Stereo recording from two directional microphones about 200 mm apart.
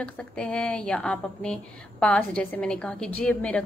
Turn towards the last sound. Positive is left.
turn(degrees=5)  # may be behind; listen again after turning